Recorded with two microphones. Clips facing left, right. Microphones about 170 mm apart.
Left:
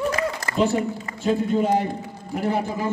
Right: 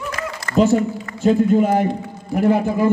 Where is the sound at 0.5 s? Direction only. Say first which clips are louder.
Right 7 dB; 45° right (ahead or behind).